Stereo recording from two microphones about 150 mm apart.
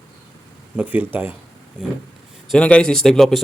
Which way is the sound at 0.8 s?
10° right (ahead or behind).